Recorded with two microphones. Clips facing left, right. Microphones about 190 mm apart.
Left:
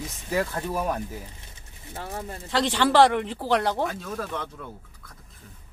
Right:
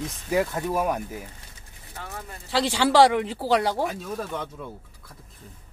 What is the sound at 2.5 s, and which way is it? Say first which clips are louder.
Speech: right 1 dB; 10° right (ahead or behind).